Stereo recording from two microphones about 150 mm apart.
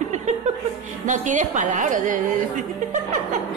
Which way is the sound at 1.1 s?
55° right (ahead or behind).